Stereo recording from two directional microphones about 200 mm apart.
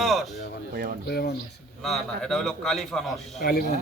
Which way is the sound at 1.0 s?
55° left (ahead or behind).